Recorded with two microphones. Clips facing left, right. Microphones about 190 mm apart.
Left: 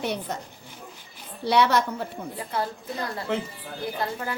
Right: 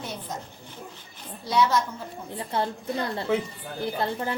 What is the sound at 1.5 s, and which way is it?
Speech, 70° left (ahead or behind).